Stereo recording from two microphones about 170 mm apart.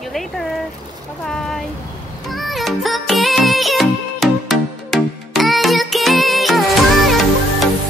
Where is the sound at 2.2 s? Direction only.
Centre (ahead or behind).